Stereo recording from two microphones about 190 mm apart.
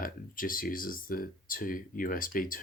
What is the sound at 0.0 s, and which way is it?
Speech, 50° left (ahead or behind).